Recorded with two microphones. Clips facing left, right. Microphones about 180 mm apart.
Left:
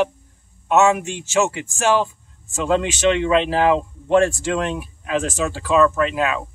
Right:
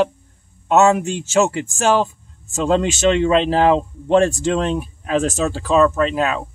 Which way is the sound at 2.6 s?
35° right (ahead or behind).